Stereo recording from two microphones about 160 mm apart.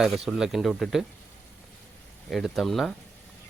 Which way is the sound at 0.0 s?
5° right (ahead or behind).